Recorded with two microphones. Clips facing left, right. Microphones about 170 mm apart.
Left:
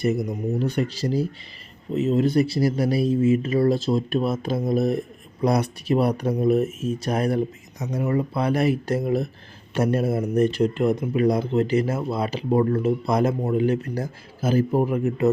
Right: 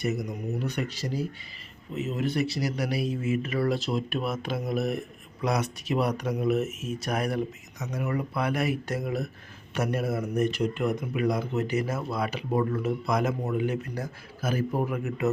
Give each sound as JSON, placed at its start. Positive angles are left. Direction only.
{"t": 0.0, "sound": "speech", "side_deg": 30}